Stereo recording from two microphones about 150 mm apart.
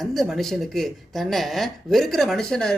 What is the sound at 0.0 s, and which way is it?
A woman's voice, centre (ahead or behind).